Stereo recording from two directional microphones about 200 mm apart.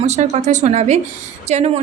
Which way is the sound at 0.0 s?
35° right (ahead or behind).